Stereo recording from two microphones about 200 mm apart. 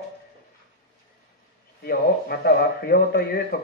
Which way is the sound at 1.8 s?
50° left (ahead or behind).